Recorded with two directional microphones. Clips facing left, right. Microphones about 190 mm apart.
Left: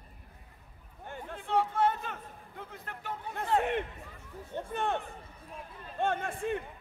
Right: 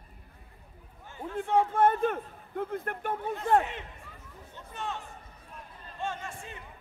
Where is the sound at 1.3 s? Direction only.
55° right (ahead or behind).